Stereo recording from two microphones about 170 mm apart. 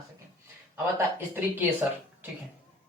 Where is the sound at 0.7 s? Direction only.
10° right (ahead or behind).